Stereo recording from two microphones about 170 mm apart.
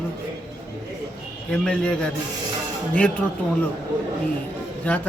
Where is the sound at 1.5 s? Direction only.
5° left (ahead or behind).